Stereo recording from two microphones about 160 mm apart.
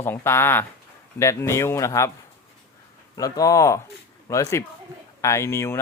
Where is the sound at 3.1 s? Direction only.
20° left (ahead or behind).